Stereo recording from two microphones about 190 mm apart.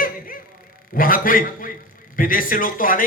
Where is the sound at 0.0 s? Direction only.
50° left (ahead or behind).